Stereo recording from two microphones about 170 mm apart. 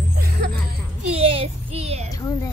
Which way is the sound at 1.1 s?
35° right (ahead or behind).